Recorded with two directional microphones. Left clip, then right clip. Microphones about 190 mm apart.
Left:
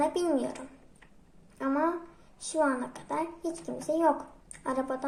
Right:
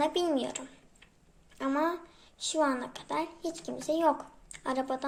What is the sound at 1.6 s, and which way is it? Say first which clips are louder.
A woman's voice: left 1 dB; 25° right (ahead or behind).